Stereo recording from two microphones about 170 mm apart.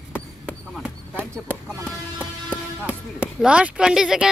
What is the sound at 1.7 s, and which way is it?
Music, 5° left (ahead or behind).